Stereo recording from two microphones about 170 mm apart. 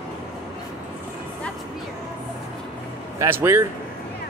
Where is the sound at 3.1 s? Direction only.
15° right (ahead or behind).